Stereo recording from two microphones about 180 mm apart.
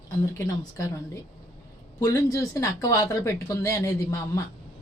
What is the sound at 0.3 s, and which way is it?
Speech, 15° left (ahead or behind).